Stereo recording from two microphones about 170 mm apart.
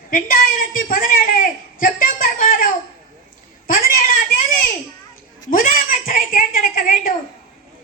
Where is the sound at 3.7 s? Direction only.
60° left (ahead or behind).